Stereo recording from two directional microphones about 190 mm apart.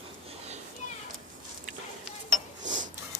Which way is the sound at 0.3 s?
35° right (ahead or behind).